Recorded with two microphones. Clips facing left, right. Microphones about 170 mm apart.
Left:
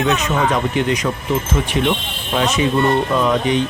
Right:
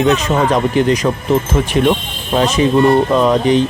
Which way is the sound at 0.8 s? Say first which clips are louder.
Right 5 dB; 35° right (ahead or behind).